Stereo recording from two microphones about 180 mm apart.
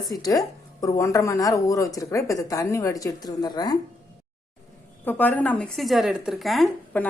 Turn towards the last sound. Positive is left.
turn(degrees=5)  # may be behind; listen again after turning